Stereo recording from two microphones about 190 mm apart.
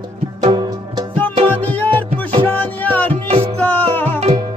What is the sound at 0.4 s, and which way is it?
Music, 25° right (ahead or behind).